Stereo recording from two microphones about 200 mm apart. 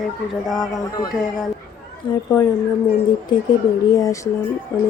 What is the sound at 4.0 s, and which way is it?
Speech, 15° left (ahead or behind).